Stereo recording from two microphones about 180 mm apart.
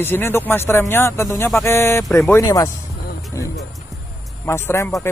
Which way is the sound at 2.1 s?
Centre (ahead or behind).